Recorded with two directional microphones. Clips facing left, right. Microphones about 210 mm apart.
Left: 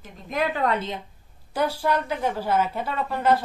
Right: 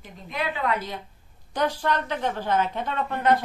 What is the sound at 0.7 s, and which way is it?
Speech, 25° left (ahead or behind).